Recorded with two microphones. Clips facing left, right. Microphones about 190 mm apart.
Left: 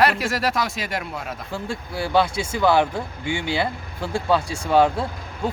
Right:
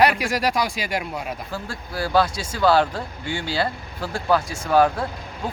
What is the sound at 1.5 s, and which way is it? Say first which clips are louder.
Speech: left 2 dB; 25° left (ahead or behind).